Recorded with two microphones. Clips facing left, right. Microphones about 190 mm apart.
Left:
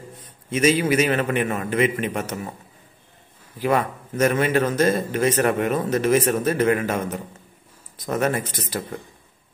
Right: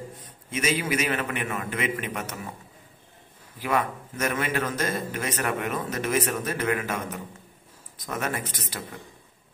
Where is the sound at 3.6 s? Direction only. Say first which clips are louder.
Left 5 dB; 35° left (ahead or behind).